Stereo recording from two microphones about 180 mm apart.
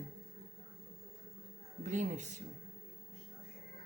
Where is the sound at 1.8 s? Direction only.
40° right (ahead or behind).